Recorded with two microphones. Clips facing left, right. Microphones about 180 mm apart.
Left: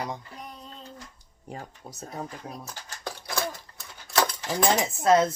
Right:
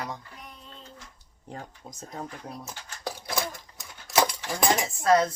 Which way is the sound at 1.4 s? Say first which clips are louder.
Left 1 dB; 10° left (ahead or behind).